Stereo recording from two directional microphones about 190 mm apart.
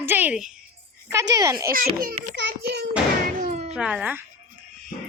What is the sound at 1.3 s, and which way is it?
Speech, 20° right (ahead or behind).